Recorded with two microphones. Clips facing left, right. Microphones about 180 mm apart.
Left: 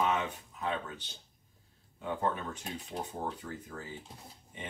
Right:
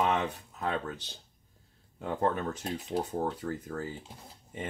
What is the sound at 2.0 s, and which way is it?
Speech, 40° right (ahead or behind).